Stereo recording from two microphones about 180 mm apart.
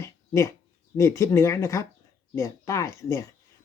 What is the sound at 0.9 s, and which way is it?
Speech, 15° left (ahead or behind).